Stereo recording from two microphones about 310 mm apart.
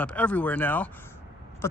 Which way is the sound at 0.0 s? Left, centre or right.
Centre.